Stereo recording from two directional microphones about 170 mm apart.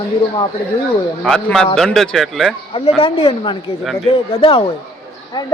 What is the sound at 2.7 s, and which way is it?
Speech, 30° left (ahead or behind).